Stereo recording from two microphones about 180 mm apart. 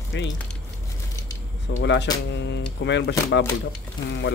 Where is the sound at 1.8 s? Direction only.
80° left.